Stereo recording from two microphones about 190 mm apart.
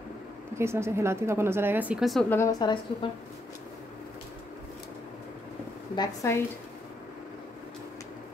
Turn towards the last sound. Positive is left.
turn(degrees=15)  # may be behind; listen again after turning